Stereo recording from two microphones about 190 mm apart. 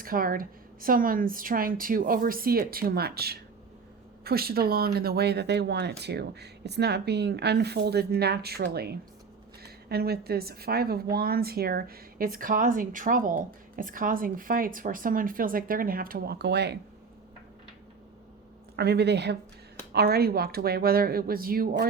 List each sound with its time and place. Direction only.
0.0 s speech: 50° right (ahead or behind)
18.8 s speech: 60° right (ahead or behind)